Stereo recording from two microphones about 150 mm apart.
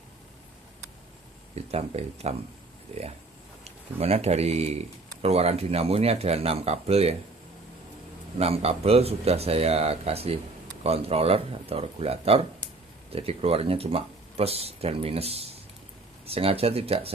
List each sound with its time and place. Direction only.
1.5 s speech: 45° right (ahead or behind)
3.6 s speech: 45° right (ahead or behind)
8.4 s speech: 40° right (ahead or behind)